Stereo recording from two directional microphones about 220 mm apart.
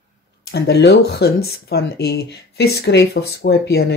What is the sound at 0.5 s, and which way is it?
Speech, 45° left (ahead or behind).